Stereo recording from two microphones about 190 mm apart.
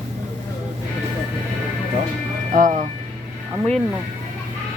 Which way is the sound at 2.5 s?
40° right (ahead or behind).